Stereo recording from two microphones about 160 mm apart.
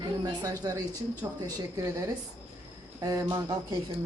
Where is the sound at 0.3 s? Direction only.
25° right (ahead or behind).